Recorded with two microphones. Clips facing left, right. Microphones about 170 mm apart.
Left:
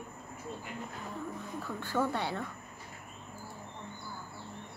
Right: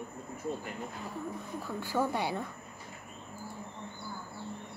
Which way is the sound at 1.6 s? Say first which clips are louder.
Right 1 dB; 10° right (ahead or behind).